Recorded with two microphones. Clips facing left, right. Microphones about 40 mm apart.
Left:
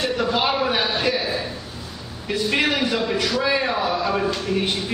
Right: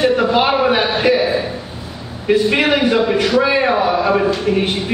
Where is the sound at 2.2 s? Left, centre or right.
Right.